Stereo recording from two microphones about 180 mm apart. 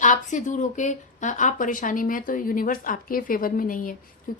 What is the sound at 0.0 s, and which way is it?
A woman's voice, 45° left (ahead or behind).